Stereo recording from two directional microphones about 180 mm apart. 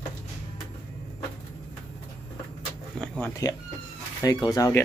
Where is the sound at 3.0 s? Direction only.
15° left (ahead or behind).